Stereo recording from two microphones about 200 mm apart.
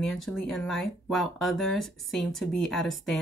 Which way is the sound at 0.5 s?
Centre (ahead or behind).